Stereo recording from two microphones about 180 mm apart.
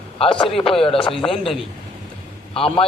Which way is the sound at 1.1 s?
Centre (ahead or behind).